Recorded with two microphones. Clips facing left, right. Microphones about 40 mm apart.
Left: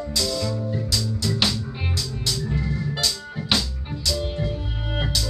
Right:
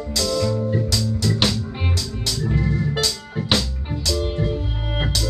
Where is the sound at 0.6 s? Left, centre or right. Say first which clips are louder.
Right 5 dB; right.